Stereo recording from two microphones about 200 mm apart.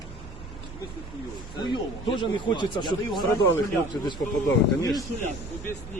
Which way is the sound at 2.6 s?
20° left (ahead or behind).